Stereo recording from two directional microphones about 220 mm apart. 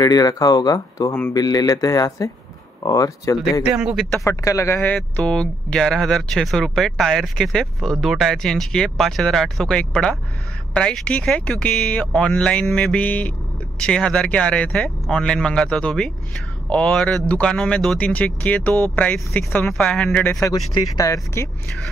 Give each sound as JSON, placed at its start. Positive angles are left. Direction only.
{"t": 0.0, "sound": "speech", "side_deg": 15}
{"t": 3.6, "sound": "speech", "side_deg": -5}
{"t": 4.2, "sound": "speech", "side_deg": 15}